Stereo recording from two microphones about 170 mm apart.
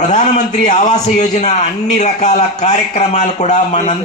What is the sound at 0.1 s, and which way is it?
Speech, 45° left (ahead or behind).